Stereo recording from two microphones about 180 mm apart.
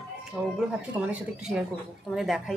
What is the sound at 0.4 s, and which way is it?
Speech, 5° right (ahead or behind).